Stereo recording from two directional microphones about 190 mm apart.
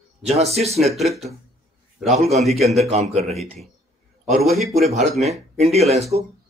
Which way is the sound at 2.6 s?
Centre (ahead or behind).